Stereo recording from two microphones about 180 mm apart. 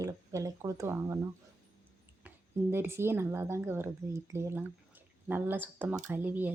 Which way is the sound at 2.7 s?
15° right (ahead or behind).